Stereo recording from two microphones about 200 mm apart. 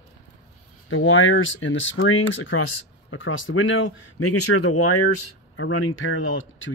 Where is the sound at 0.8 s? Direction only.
85° left.